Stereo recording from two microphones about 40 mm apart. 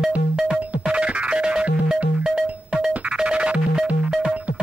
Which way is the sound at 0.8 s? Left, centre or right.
Right.